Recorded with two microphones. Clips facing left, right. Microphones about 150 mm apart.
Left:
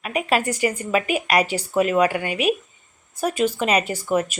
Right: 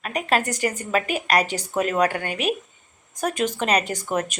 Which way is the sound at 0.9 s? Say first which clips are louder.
Left 1 dB; 40° right (ahead or behind).